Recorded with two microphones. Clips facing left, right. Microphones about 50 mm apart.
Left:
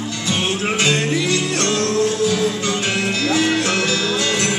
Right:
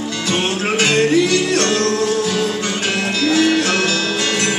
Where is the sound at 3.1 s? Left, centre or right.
Left.